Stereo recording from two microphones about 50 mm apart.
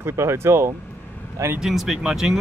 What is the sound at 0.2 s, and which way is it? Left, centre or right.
Speech, right.